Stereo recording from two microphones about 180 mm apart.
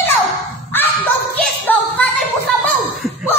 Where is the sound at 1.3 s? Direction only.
10° left (ahead or behind).